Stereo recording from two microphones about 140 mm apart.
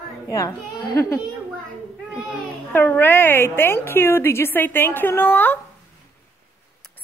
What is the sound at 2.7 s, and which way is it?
A woman's voice, 15° left (ahead or behind).